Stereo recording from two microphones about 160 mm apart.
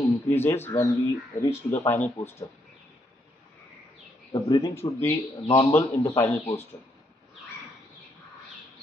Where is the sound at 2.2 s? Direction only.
45° left (ahead or behind).